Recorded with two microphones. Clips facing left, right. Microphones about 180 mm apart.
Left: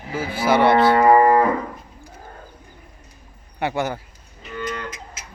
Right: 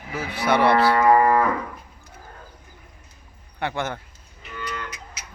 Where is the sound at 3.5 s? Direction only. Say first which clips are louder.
Left 4 dB; 10° left (ahead or behind).